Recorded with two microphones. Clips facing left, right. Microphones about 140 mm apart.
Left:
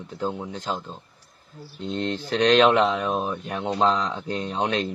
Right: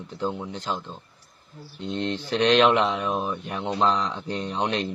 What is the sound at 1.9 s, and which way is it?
Speech, 45° left (ahead or behind).